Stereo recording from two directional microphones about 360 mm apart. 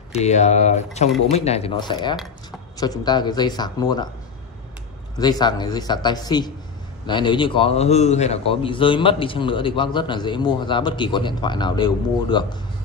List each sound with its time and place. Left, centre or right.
0.1 s a man's voice: centre
5.2 s a man's voice: centre